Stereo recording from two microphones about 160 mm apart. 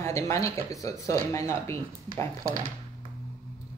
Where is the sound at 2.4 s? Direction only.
60° right (ahead or behind).